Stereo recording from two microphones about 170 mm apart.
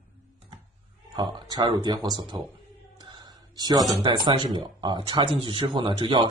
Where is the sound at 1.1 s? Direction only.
25° right (ahead or behind).